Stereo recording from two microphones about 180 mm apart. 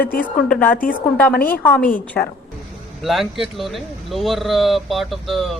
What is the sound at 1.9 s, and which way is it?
Speech, 10° left (ahead or behind).